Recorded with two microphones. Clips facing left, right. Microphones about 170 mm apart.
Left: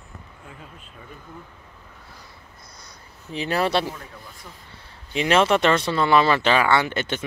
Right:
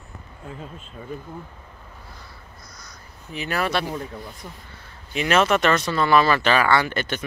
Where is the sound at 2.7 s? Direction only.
30° left (ahead or behind).